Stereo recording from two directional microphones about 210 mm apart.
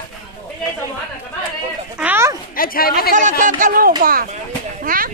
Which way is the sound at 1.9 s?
10° right (ahead or behind).